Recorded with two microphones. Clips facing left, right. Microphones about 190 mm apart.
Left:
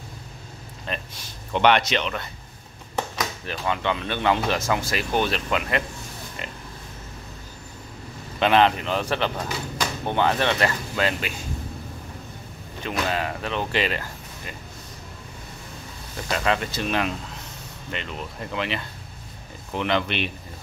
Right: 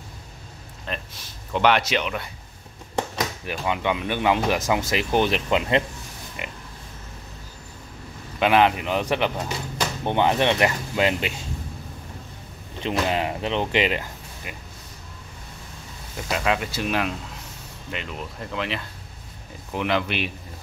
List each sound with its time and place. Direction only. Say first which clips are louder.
0.9 s speech: left 1 dB; centre (ahead or behind)
3.4 s speech: right 1 dB; 15° right (ahead or behind)
6.4 s a sound: right 2 dB; 15° right (ahead or behind)
8.4 s speech: even; 10° right (ahead or behind)
12.8 s speech: right 2 dB; 20° right (ahead or behind)
16.2 s speech: even; 5° right (ahead or behind)